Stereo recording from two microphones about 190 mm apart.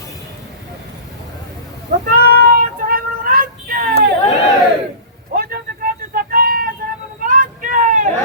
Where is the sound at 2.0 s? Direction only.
50° right (ahead or behind).